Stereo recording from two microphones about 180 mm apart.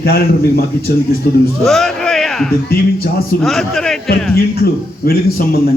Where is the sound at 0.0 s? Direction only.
60° left (ahead or behind).